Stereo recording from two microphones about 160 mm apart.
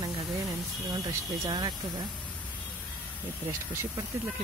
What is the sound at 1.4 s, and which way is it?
Speech, 25° right (ahead or behind).